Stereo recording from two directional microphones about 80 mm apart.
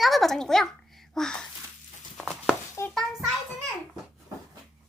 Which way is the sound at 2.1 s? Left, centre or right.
Centre.